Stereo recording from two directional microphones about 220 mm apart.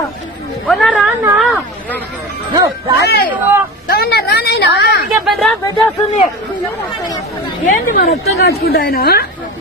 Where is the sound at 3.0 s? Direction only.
45° left (ahead or behind).